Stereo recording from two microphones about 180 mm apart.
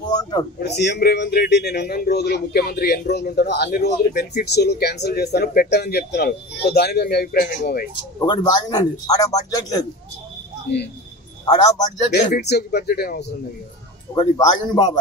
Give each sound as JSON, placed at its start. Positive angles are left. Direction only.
{"t": 0.0, "sound": "a sound", "side_deg": 20}
{"t": 0.6, "sound": "speech", "side_deg": 65}
{"t": 8.3, "sound": "a man's voice", "side_deg": 20}
{"t": 11.4, "sound": "a man's voice", "side_deg": 20}
{"t": 12.4, "sound": "speech", "side_deg": 65}
{"t": 14.1, "sound": "a man's voice", "side_deg": 20}